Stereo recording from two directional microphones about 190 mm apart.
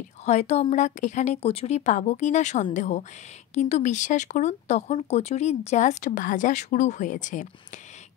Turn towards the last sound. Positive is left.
turn(degrees=40)  # may be behind; listen again after turning